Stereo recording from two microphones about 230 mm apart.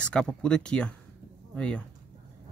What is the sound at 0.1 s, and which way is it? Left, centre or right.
Speech, centre.